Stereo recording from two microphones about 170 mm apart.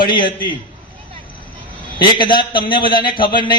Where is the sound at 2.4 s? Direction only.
30° left (ahead or behind).